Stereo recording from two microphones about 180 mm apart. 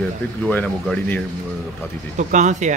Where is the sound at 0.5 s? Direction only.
5° left (ahead or behind).